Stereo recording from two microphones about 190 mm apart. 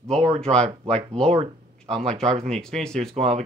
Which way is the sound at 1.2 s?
30° right (ahead or behind).